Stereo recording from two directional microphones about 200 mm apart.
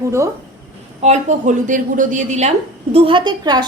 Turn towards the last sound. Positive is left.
turn(degrees=-20)  # may be behind; listen again after turning